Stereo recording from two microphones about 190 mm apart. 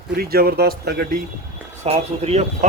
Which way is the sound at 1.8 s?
35° right (ahead or behind).